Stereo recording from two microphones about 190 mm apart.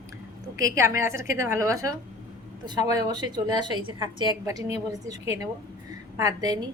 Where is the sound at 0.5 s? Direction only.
15° right (ahead or behind).